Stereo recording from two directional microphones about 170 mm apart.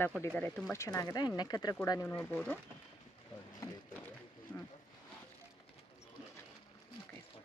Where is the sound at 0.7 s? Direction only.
15° left (ahead or behind).